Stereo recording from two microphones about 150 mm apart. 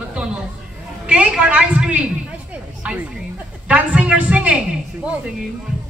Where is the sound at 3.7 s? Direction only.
10° right (ahead or behind).